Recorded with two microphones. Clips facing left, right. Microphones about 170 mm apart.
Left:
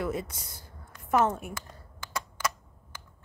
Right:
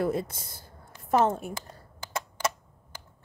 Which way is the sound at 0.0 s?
30° right (ahead or behind).